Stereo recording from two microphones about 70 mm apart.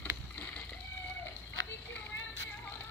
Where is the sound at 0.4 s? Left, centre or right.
Left.